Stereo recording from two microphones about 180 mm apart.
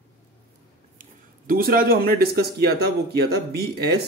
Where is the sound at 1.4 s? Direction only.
55° right (ahead or behind).